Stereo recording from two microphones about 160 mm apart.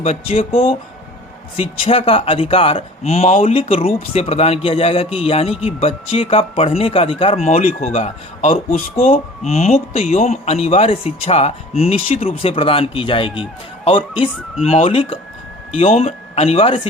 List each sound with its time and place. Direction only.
0.0 s speech: 40° left (ahead or behind)